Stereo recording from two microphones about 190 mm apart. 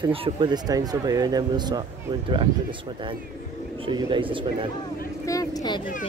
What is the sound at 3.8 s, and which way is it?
Speech, 25° right (ahead or behind).